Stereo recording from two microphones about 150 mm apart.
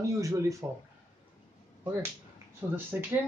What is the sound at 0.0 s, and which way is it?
Speech, 20° right (ahead or behind).